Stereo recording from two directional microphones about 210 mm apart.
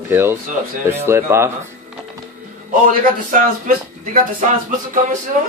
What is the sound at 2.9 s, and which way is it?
Speech, 40° right (ahead or behind).